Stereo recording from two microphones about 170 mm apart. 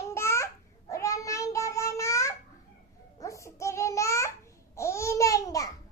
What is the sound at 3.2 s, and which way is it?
Babbling, 20° left (ahead or behind).